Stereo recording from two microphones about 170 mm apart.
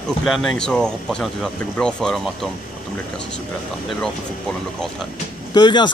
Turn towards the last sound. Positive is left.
turn(degrees=25)  # may be behind; listen again after turning